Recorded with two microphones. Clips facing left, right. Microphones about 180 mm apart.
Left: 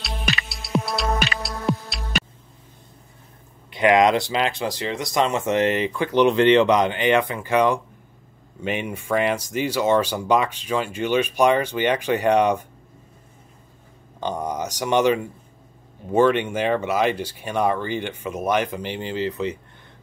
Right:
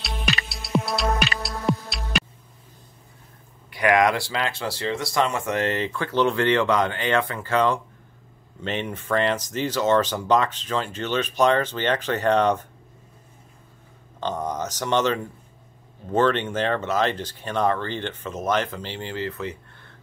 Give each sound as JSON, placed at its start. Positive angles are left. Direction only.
{"t": 0.0, "sound": "music", "side_deg": 0}
{"t": 3.7, "sound": "speech", "side_deg": 20}
{"t": 14.2, "sound": "speech", "side_deg": 10}